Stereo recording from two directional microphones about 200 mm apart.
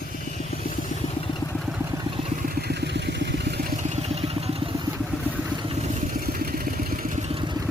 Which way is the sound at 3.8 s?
35° right (ahead or behind).